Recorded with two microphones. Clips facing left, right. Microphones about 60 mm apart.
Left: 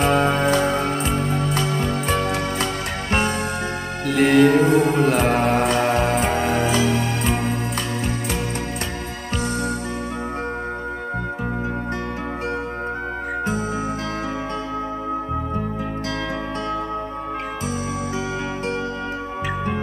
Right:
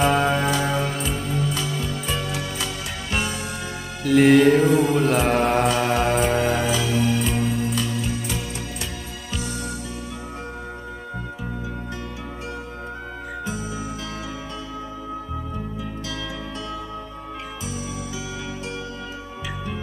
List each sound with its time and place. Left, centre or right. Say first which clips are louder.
0.0 s music: left 1 dB; centre
1.3 s music: left 3 dB; left
4.0 s music: right 1 dB; centre
7.2 s music: left 1 dB; left